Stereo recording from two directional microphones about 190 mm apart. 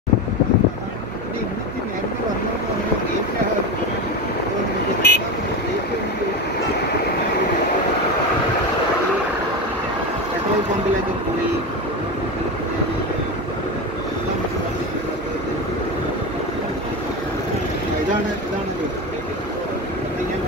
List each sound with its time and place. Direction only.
5.0 s vehicle: 60° left (ahead or behind)